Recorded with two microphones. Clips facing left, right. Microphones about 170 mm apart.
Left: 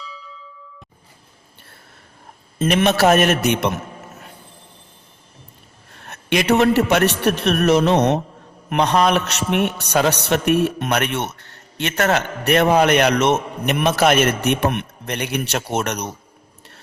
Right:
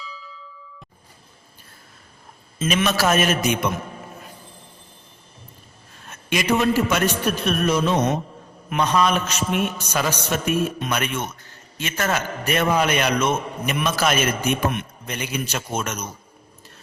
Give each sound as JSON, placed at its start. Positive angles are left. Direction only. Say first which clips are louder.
{"t": 2.6, "sound": "a man's voice", "louder": "left 5 dB", "side_deg": 60}
{"t": 5.9, "sound": "a man's voice", "louder": "left 5 dB", "side_deg": 65}